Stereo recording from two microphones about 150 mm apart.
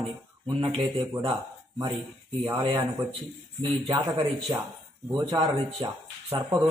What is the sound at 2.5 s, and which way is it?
A man's voice, 25° right (ahead or behind).